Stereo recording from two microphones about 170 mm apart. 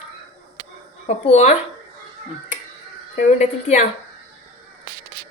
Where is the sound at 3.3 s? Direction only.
40° left (ahead or behind).